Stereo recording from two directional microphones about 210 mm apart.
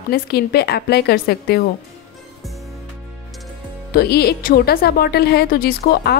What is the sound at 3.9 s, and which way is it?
Speech, 50° left (ahead or behind).